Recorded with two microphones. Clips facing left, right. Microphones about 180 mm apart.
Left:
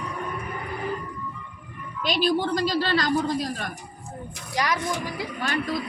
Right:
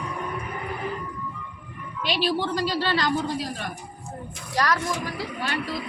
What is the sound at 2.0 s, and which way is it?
A woman's voice, 45° left (ahead or behind).